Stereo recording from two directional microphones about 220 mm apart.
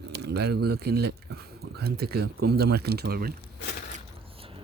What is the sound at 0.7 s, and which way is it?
Speech, 45° right (ahead or behind).